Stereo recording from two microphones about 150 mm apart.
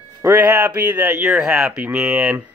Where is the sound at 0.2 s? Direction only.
15° right (ahead or behind).